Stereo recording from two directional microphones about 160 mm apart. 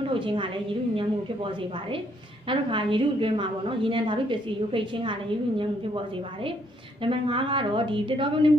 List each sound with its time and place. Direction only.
0.1 s a woman's voice: 30° right (ahead or behind)
7.0 s a woman's voice: 30° right (ahead or behind)